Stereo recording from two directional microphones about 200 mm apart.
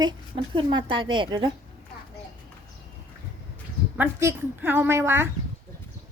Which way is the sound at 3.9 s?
10° right (ahead or behind).